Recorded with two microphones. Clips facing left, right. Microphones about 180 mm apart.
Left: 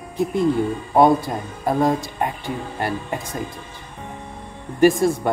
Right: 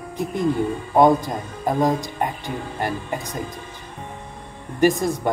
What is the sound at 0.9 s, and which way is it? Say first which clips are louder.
Speech: even; 20° right (ahead or behind).